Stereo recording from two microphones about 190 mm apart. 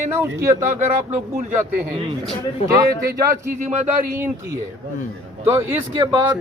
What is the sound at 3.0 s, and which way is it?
Speech, 45° right (ahead or behind).